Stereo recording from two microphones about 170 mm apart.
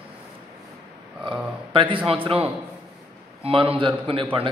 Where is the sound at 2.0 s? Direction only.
35° right (ahead or behind).